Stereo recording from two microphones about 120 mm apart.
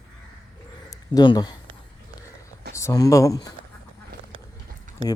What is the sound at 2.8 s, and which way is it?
Speech, 25° left (ahead or behind).